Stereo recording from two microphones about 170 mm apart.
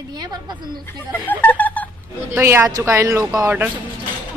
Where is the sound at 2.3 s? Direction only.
15° right (ahead or behind).